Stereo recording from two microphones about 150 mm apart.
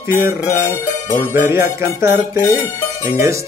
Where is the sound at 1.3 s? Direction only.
15° right (ahead or behind).